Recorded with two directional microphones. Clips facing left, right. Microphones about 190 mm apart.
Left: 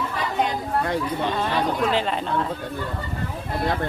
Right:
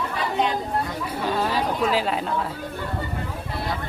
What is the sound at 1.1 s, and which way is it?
Chatter, 5° right (ahead or behind).